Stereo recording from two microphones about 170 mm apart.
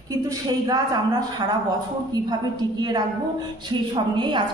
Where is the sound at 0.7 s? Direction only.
25° right (ahead or behind).